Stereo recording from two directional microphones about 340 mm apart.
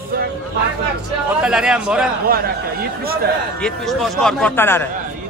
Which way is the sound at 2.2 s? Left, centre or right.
Right.